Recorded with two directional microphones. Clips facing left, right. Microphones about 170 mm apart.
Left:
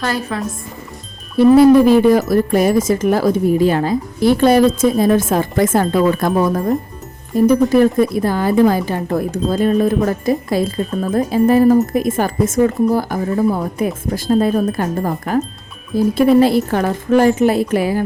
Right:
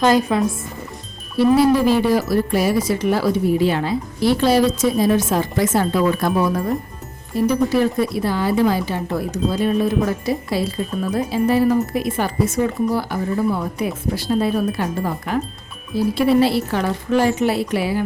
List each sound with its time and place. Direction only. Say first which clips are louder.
0.0 s speech: right 5 dB; 20° right (ahead or behind)
1.4 s a woman's voice: left 6 dB; 50° left (ahead or behind)